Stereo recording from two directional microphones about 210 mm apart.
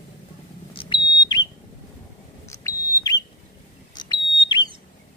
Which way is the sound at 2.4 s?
15° left (ahead or behind).